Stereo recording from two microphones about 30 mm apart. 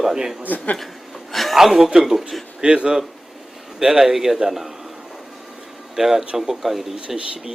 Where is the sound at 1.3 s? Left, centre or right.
Centre.